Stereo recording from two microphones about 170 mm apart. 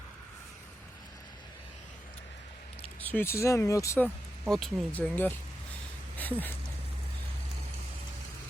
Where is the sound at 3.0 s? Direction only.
10° left (ahead or behind).